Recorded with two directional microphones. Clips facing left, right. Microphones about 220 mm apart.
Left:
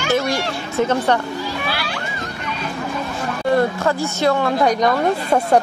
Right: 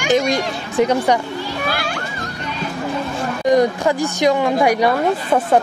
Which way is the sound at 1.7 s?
45° right (ahead or behind).